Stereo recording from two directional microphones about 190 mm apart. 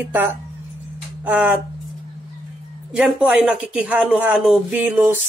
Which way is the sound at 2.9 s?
5° right (ahead or behind).